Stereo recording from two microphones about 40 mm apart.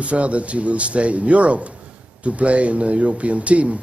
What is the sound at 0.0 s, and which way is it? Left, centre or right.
Speech, right.